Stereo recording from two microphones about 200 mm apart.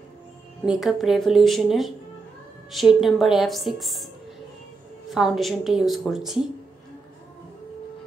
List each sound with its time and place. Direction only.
0.7 s a woman's voice: centre (ahead or behind)
5.1 s a woman's voice: centre (ahead or behind)